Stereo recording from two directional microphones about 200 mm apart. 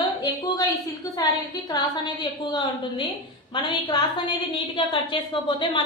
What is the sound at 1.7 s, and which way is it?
A woman's voice, 20° left (ahead or behind).